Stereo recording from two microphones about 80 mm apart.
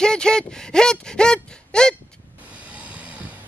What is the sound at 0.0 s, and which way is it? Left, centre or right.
Speech, centre.